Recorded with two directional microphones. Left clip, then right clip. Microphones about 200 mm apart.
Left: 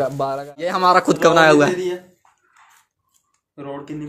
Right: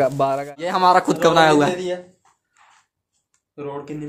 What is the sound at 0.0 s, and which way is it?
Speech, 25° right (ahead or behind).